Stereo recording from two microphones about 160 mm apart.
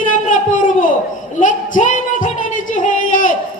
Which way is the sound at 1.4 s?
55° left (ahead or behind).